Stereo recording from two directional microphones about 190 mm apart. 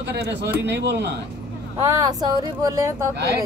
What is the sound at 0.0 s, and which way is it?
Speech, 65° right (ahead or behind).